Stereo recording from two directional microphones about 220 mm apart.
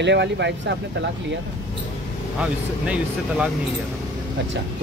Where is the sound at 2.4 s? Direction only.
5° right (ahead or behind).